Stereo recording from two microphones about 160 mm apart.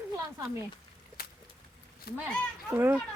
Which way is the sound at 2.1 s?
80° left.